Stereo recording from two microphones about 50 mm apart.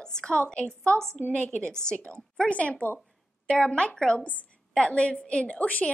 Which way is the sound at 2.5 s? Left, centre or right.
Left.